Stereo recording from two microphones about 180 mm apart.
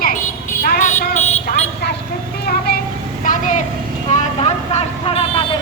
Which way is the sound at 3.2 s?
45° left (ahead or behind).